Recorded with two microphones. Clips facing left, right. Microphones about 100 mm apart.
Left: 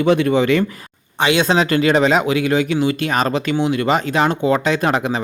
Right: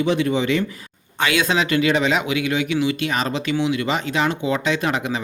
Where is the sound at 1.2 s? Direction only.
25° left (ahead or behind).